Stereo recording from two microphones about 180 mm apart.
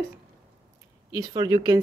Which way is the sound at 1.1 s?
20° right (ahead or behind).